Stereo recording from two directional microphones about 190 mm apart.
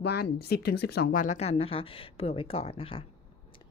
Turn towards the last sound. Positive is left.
turn(degrees=30)  # may be behind; listen again after turning